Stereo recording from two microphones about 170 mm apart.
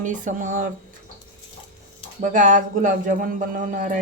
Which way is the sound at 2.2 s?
50° right (ahead or behind).